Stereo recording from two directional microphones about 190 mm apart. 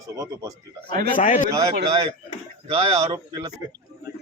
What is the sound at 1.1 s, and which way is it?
Speech, 40° left (ahead or behind).